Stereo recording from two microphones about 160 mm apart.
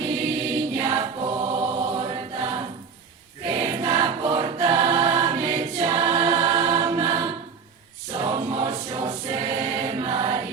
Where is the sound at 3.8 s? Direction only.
30° right (ahead or behind).